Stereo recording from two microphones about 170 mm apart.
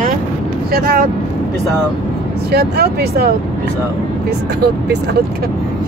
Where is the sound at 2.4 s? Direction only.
70° right (ahead or behind).